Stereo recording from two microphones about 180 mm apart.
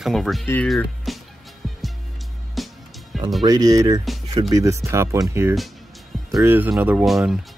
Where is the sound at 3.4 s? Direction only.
20° right (ahead or behind).